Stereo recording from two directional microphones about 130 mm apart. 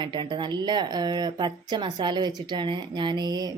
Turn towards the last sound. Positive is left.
turn(degrees=-30)  # may be behind; listen again after turning